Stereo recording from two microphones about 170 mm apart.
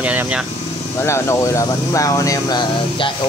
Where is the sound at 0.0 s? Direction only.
10° right (ahead or behind).